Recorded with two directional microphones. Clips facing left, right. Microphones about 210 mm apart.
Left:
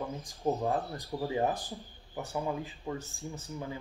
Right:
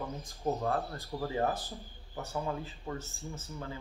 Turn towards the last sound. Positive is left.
turn(degrees=15)  # may be behind; listen again after turning